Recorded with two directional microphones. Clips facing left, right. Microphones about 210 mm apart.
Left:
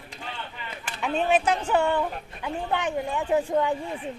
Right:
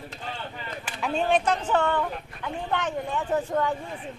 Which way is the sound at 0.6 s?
5° left (ahead or behind).